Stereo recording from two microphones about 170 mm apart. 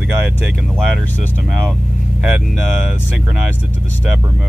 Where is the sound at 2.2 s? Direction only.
5° right (ahead or behind).